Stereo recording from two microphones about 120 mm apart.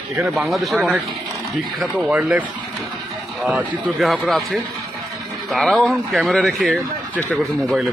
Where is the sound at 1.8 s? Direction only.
10° right (ahead or behind).